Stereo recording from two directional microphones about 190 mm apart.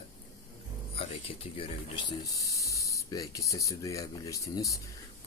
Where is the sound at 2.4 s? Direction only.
15° left (ahead or behind).